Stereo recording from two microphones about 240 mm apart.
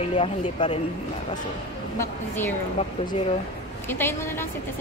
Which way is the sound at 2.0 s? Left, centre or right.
Centre.